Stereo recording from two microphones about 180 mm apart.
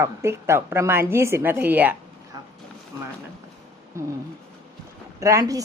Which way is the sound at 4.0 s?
15° right (ahead or behind).